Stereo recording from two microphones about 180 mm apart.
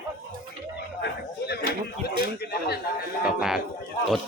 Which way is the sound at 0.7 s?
65° left (ahead or behind).